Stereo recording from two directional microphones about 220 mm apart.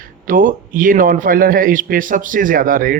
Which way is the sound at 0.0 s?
40° right (ahead or behind).